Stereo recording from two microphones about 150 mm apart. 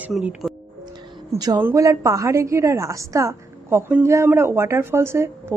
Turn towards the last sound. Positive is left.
turn(degrees=-15)  # may be behind; listen again after turning